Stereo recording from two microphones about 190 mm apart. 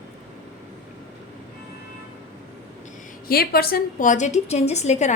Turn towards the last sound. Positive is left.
turn(degrees=40)  # may be behind; listen again after turning